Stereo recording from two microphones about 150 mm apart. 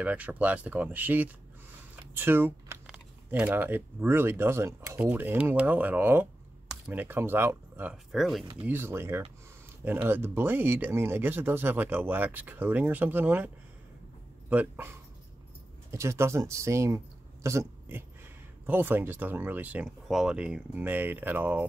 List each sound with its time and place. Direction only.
0.0 s speech: 10° right (ahead or behind)
8.1 s speech: centre (ahead or behind)
8.6 s speech: 15° right (ahead or behind)
14.5 s speech: 10° right (ahead or behind)
15.9 s speech: 20° right (ahead or behind)